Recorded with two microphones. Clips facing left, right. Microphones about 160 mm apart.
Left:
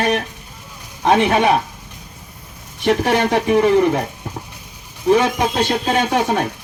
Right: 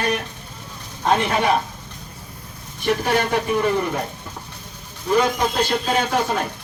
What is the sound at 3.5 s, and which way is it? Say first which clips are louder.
Speech: left 10 dB; 70° left (ahead or behind).